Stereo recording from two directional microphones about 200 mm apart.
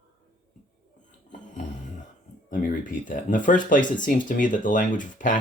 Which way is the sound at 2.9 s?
40° left (ahead or behind).